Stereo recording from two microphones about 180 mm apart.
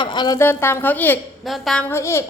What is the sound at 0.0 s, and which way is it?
A woman's voice, 25° left (ahead or behind).